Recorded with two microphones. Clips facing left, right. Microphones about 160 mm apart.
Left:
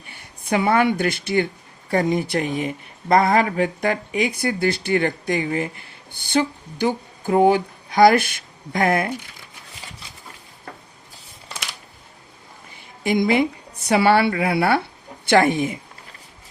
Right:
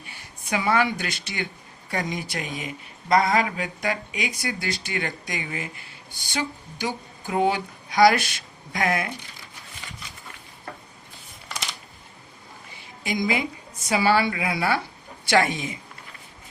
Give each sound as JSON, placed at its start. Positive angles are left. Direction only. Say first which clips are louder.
{"t": 0.1, "sound": "a woman's voice", "louder": "left 6 dB", "side_deg": 55}
{"t": 13.0, "sound": "a woman's voice", "louder": "left 7 dB", "side_deg": 55}